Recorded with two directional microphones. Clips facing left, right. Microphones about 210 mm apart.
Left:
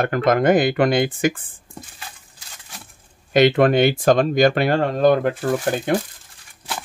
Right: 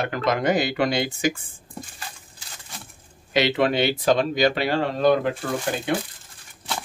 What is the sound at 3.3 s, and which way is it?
Speech, 50° left (ahead or behind).